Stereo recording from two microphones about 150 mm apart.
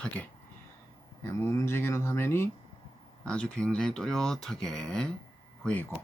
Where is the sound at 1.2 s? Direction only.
15° left (ahead or behind).